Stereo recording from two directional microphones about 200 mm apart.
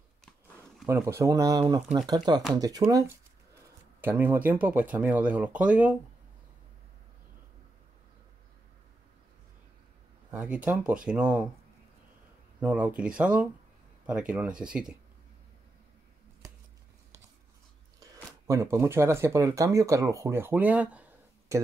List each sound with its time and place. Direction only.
0.8 s speech: 15° right (ahead or behind)
10.3 s speech: 5° right (ahead or behind)
12.5 s speech: 5° right (ahead or behind)
18.0 s speech: 15° right (ahead or behind)